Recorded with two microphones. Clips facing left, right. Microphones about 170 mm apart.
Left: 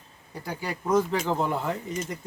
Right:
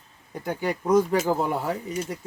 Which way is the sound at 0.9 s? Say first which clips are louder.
Right 3 dB; 10° right (ahead or behind).